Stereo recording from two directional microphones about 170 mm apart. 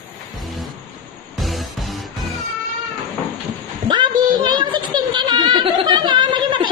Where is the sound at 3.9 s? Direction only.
25° right (ahead or behind).